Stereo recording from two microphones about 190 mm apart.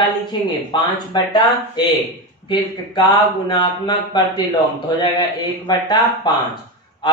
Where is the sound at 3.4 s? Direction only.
20° left (ahead or behind).